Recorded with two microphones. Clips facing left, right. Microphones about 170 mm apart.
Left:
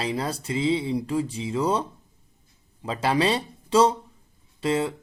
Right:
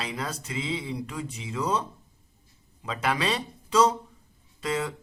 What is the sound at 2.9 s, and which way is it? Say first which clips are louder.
Speech: left 5 dB; 30° left (ahead or behind).